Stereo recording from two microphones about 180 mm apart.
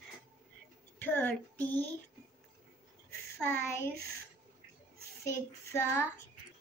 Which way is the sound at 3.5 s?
15° left (ahead or behind).